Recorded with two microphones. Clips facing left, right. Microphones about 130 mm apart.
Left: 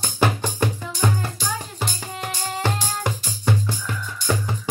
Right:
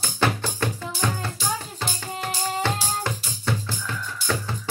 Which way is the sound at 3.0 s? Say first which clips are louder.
Left 3 dB; 15° left (ahead or behind).